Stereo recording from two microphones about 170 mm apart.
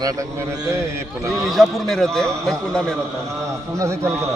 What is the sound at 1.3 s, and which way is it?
A man's voice, centre (ahead or behind).